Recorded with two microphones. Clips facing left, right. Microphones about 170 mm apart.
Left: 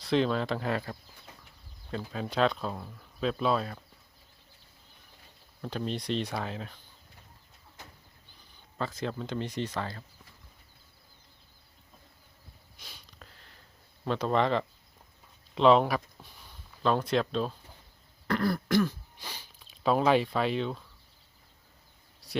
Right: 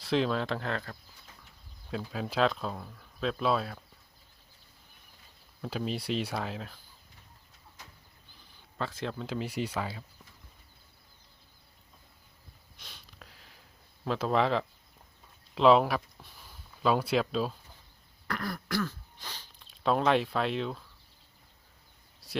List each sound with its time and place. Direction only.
0.0 s speech: centre (ahead or behind)
1.9 s speech: centre (ahead or behind)
5.6 s speech: 5° right (ahead or behind)
8.8 s speech: centre (ahead or behind)
12.7 s sniff: centre (ahead or behind)
14.0 s speech: centre (ahead or behind)
18.3 s throat clearing: 30° left (ahead or behind)
18.8 s speech: 15° left (ahead or behind)